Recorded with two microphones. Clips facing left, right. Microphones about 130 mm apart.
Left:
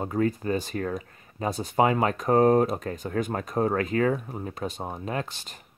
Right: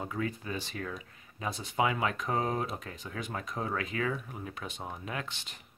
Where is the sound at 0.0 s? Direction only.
45° left (ahead or behind).